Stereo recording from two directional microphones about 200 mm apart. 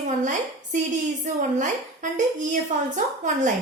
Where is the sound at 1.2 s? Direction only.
40° right (ahead or behind).